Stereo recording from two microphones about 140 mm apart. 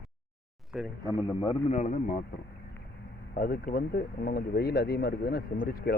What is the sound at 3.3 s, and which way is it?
Speech, 90° left.